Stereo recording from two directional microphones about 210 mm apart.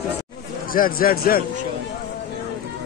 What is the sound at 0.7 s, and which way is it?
Speech, 45° left (ahead or behind).